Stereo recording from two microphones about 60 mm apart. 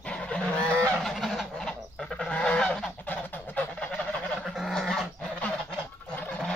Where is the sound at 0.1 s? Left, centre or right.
Centre.